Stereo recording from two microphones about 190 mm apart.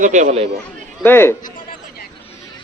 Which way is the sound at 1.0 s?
10° left (ahead or behind).